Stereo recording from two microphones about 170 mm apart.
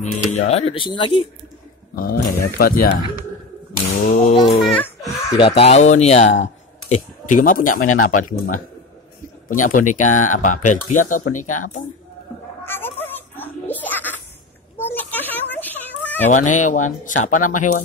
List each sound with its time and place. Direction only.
0.0 s speech: 45° left (ahead or behind)
2.0 s speech: 60° left (ahead or behind)
4.1 s speech: 50° left (ahead or behind)
4.6 s a child's voice: 5° left (ahead or behind)
5.3 s speech: 35° left (ahead or behind); by 11.8 s 50° left (ahead or behind)
12.6 s a sound: 10° left (ahead or behind)
16.3 s speech: 45° left (ahead or behind)